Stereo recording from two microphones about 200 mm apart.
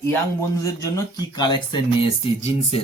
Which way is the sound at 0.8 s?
20° left (ahead or behind).